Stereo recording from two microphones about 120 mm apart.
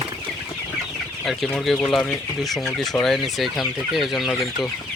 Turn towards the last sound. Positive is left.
turn(degrees=0)  # may be behind; listen again after turning